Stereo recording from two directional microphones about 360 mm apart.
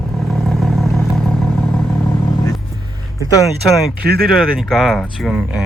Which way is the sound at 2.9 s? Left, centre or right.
Centre.